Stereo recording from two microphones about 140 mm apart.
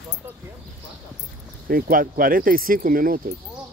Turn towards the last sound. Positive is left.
turn(degrees=-90)